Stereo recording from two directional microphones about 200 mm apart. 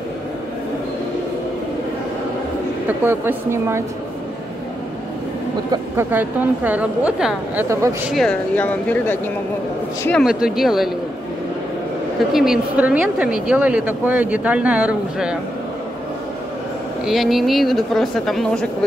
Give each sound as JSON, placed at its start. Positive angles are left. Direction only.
{"t": 3.1, "sound": "speech", "side_deg": -10}
{"t": 5.7, "sound": "a woman's voice", "side_deg": -10}
{"t": 12.3, "sound": "speech", "side_deg": 0}
{"t": 17.0, "sound": "a woman's voice", "side_deg": 0}